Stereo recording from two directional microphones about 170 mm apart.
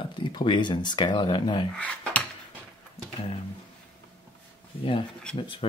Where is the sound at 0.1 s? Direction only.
30° left (ahead or behind).